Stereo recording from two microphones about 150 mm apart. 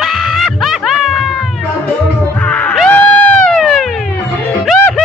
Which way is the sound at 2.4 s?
10° left (ahead or behind).